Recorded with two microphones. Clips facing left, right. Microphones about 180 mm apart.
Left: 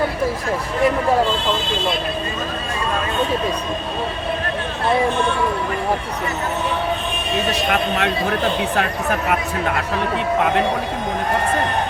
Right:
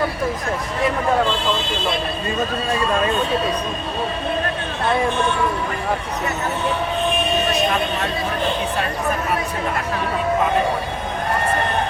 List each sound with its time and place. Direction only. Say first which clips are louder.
7.7 s a man's voice: left 2 dB; 70° left (ahead or behind)